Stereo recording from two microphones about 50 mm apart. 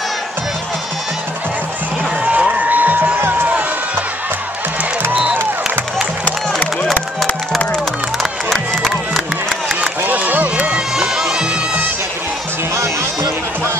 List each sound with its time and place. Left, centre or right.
2.2 s a sound: right
6.2 s music: left
8.2 s music: centre
9.8 s music: right
10.7 s run: centre
12.7 s music: right